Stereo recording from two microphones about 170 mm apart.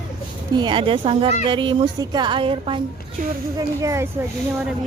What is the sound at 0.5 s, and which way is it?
A woman's voice, 25° right (ahead or behind).